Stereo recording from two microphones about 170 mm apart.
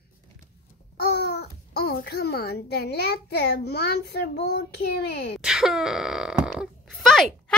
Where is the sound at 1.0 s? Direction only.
70° left (ahead or behind).